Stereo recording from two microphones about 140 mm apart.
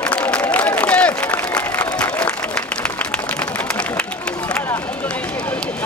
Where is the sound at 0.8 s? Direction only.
10° left (ahead or behind).